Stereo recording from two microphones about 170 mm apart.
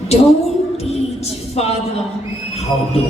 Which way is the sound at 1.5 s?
35° left (ahead or behind).